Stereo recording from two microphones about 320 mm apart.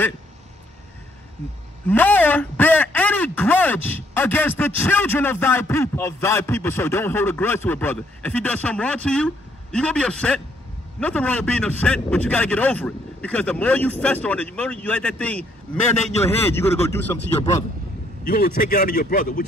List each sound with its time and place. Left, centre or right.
1.9 s speech: centre
18.2 s speech: left